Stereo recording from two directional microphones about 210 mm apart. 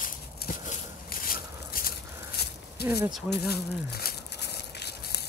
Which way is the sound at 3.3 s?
50° left (ahead or behind).